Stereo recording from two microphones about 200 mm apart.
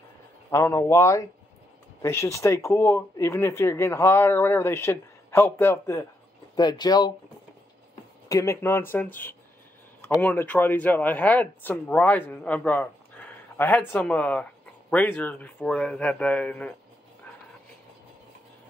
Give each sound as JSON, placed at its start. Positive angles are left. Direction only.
{"t": 0.5, "sound": "speech", "side_deg": 15}
{"t": 8.3, "sound": "speech", "side_deg": 15}